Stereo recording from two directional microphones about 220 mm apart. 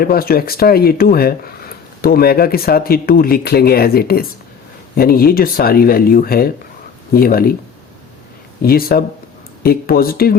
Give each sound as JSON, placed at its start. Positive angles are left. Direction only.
{"t": 0.0, "sound": "speech", "side_deg": 40}
{"t": 8.6, "sound": "speech", "side_deg": 45}